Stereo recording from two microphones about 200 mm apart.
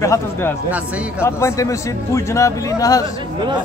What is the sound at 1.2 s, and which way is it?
Speech, 15° left (ahead or behind).